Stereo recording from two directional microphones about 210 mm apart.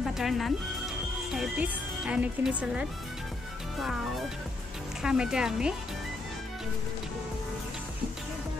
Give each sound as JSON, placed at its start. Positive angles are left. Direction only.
{"t": 0.0, "sound": "speech", "side_deg": 0}
{"t": 5.0, "sound": "speech", "side_deg": -5}